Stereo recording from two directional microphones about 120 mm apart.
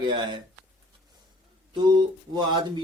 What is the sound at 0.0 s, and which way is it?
Speech, 40° right (ahead or behind).